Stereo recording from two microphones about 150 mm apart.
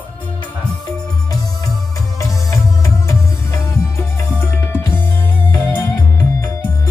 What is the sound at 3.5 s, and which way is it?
Music, 15° left (ahead or behind).